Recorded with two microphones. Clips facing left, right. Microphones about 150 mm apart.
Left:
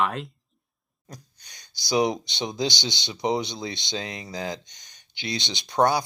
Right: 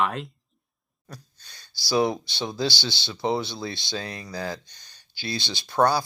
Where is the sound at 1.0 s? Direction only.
15° left (ahead or behind).